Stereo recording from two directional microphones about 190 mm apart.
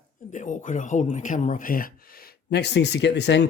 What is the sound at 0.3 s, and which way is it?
Speech, 40° left (ahead or behind).